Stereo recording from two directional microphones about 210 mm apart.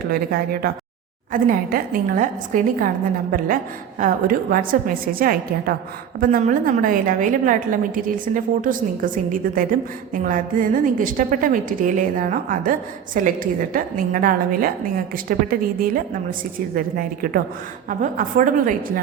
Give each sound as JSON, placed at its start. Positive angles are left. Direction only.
{"t": 0.1, "sound": "a woman's voice", "side_deg": -45}